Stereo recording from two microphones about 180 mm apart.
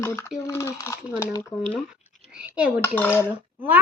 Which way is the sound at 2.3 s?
5° right (ahead or behind).